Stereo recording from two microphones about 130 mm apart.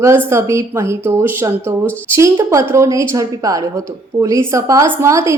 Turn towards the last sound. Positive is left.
turn(degrees=-25)  # may be behind; listen again after turning